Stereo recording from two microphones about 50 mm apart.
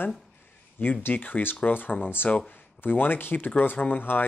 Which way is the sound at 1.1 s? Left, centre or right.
Left.